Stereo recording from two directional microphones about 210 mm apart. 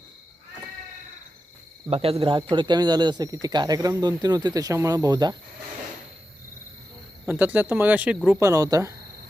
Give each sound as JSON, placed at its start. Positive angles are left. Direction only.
{"t": 1.9, "sound": "speech", "side_deg": -30}
{"t": 7.3, "sound": "speech", "side_deg": -10}